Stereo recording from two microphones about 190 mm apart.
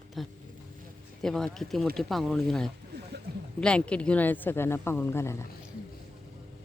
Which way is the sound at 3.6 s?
5° left (ahead or behind).